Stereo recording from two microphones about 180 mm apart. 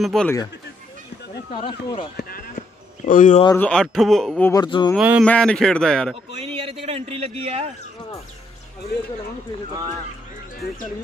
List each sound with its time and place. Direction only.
0.0 s a man's voice: centre (ahead or behind)
1.5 s speech: 25° left (ahead or behind)
2.1 s a sound: 55° left (ahead or behind)
3.1 s speech: 45° left (ahead or behind)
3.5 s a man's voice: 5° left (ahead or behind)
4.5 s speech: 25° left (ahead or behind)
4.9 s a man's voice: 5° right (ahead or behind)
5.2 s a man's voice: 5° left (ahead or behind)
6.4 s a man's voice: 30° right (ahead or behind)